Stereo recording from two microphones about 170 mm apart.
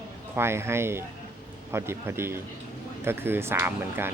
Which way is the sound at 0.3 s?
15° right (ahead or behind).